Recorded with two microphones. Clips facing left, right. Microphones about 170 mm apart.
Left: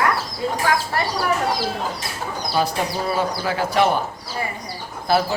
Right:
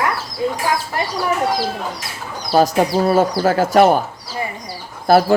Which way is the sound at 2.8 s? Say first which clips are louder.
Right 8 dB; 45° right (ahead or behind).